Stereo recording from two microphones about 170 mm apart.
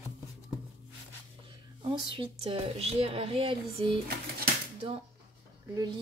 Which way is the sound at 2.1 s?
35° right (ahead or behind).